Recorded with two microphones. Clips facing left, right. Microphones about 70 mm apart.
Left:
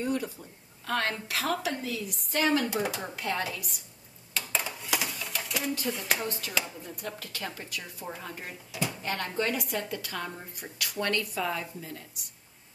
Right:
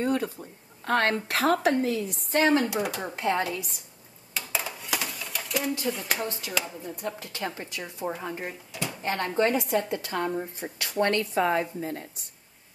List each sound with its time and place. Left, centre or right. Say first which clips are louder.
0.0 s a woman's voice: right 4 dB; right
2.7 s speech: right 2 dB; centre
3.2 s a woman's voice: right 7 dB; right
4.3 s a sound: right 1 dB; centre
5.9 s speech: right 2 dB; centre
7.1 s a woman's voice: right 5 dB; right